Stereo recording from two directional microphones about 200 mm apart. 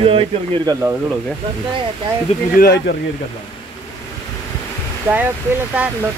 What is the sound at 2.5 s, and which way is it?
Speech, 50° left (ahead or behind).